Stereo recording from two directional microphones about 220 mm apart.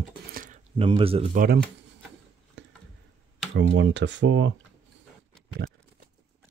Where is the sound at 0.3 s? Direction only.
40° right (ahead or behind).